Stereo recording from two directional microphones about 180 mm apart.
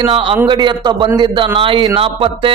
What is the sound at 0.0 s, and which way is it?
A man's voice, 30° right (ahead or behind).